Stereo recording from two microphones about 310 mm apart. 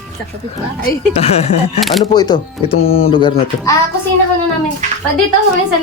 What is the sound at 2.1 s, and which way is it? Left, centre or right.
Speech, centre.